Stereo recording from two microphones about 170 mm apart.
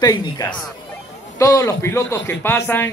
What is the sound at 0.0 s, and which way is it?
A man's voice, 20° left (ahead or behind).